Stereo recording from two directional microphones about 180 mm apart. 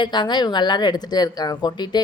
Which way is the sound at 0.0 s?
25° left (ahead or behind).